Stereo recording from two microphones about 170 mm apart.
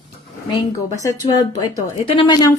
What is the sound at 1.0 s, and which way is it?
Speech, 20° left (ahead or behind).